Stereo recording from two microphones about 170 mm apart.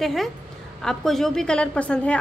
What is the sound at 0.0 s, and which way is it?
A woman's voice, centre (ahead or behind).